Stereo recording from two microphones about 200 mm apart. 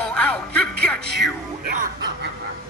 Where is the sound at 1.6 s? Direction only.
45° right (ahead or behind).